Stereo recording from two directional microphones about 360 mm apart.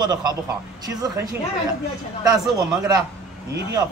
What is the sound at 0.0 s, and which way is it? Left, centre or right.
Speech, centre.